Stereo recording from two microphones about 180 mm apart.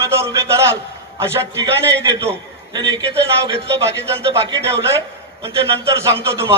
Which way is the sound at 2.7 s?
25° right (ahead or behind).